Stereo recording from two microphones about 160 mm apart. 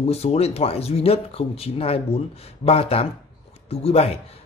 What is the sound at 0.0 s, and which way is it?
Speech, 40° left (ahead or behind).